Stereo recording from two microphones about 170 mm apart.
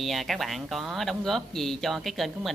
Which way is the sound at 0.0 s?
Centre (ahead or behind).